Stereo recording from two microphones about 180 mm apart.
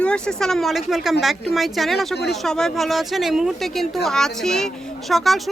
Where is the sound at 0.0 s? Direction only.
5° left (ahead or behind).